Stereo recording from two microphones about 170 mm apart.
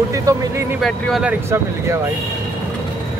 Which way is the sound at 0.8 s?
Centre (ahead or behind).